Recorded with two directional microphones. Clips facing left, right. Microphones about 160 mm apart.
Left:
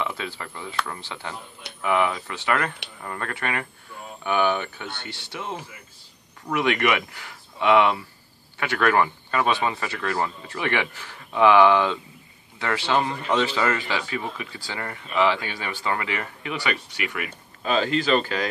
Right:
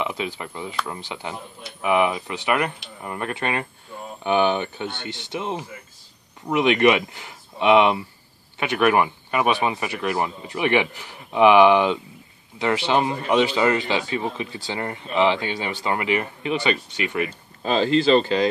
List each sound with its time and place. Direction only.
0.0 s speech: 15° right (ahead or behind)